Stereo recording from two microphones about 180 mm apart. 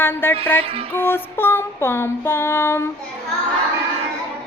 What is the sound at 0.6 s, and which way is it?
Music, 30° right (ahead or behind).